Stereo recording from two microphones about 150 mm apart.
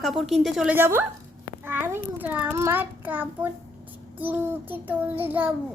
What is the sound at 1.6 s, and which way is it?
Speech, 15° right (ahead or behind).